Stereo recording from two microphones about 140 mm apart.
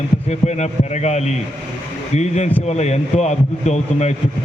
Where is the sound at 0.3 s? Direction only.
55° left (ahead or behind).